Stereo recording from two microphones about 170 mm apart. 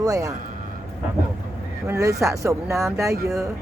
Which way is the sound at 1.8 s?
20° right (ahead or behind).